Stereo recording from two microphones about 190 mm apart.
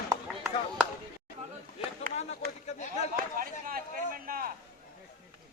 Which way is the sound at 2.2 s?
35° left (ahead or behind).